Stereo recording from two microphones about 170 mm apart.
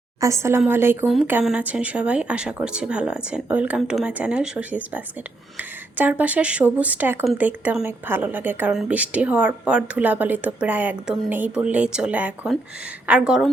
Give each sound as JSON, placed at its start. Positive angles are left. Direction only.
{"t": 0.2, "sound": "a woman's voice", "side_deg": -15}
{"t": 1.0, "sound": "a woman's voice", "side_deg": -5}